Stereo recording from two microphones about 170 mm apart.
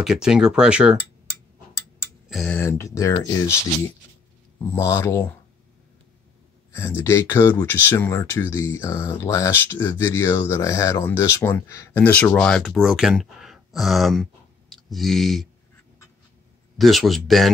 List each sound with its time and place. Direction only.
0.0 s speech: 5° right (ahead or behind)
2.2 s speech: centre (ahead or behind)
2.6 s speech: 15° left (ahead or behind)
4.7 s speech: 15° left (ahead or behind)
6.7 s speech: 15° left (ahead or behind)
16.7 s speech: centre (ahead or behind)